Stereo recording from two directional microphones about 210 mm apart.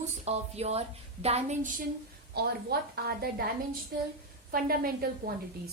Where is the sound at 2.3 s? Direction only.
50° right (ahead or behind).